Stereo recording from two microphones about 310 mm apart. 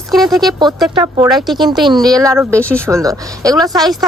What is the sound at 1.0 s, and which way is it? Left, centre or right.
Speech, centre.